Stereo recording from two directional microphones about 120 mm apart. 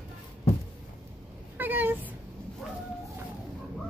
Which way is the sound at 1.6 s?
15° right (ahead or behind).